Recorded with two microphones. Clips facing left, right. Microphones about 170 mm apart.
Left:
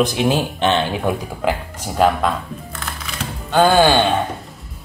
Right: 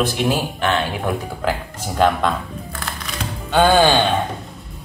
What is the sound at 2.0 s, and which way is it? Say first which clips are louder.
Speech: left 1 dB; 5° left (ahead or behind).